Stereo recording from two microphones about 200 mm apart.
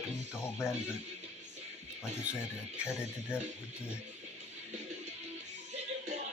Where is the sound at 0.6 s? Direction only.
5° right (ahead or behind).